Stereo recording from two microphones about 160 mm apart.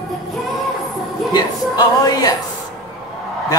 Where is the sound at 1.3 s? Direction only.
25° left (ahead or behind).